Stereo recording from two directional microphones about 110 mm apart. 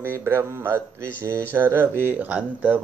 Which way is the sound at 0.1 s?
25° right (ahead or behind).